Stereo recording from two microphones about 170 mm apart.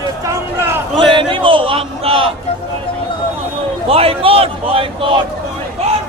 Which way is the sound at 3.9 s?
35° right (ahead or behind).